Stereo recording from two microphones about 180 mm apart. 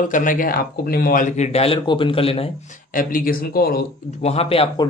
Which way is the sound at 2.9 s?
50° left (ahead or behind).